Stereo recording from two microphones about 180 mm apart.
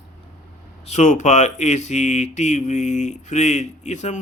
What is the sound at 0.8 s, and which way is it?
Speech, 40° left (ahead or behind).